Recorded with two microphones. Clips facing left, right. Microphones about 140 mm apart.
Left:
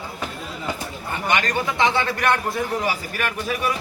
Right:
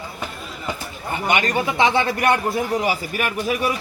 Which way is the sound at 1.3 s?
15° right (ahead or behind).